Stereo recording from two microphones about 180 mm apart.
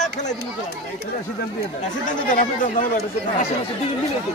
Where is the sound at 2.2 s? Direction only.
45° left (ahead or behind).